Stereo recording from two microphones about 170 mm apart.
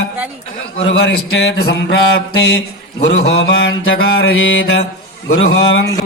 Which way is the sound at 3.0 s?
85° left.